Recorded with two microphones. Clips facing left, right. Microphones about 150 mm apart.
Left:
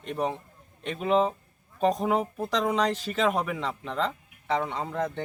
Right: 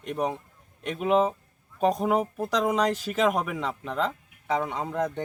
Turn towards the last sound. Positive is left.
turn(degrees=-10)  # may be behind; listen again after turning